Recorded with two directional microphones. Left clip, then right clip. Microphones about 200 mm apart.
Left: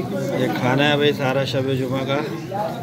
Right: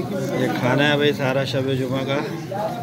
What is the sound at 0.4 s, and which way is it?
Speech, centre (ahead or behind).